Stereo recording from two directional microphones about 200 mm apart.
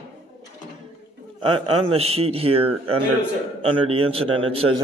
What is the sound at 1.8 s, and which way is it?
A man's voice, 30° right (ahead or behind).